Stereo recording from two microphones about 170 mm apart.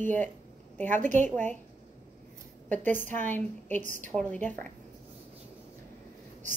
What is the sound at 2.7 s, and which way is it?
A woman's voice, 10° left (ahead or behind).